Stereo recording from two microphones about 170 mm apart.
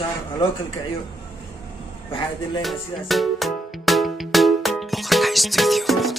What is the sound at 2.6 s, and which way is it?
Music, centre (ahead or behind).